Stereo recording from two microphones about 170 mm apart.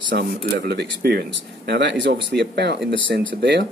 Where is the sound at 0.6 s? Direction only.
70° right (ahead or behind); by 3.6 s 90° right.